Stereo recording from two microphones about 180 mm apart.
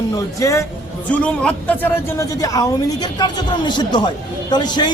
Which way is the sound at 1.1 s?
5° left (ahead or behind).